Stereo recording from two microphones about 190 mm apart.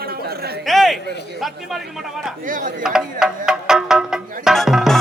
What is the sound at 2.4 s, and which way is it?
Speech, 45° right (ahead or behind).